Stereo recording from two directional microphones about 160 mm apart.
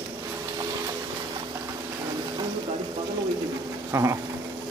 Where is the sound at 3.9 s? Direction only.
20° right (ahead or behind).